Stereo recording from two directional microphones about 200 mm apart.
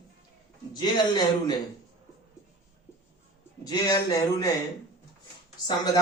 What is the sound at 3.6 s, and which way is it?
Speech, 20° left (ahead or behind).